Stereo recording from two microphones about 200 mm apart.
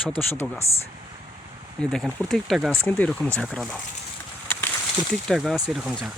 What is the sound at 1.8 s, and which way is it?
Speech, 5° left (ahead or behind).